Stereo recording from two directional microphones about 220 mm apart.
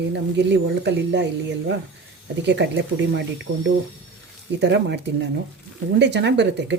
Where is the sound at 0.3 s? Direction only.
50° right (ahead or behind).